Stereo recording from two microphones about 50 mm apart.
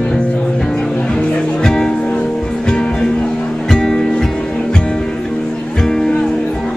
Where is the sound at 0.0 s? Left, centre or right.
Centre.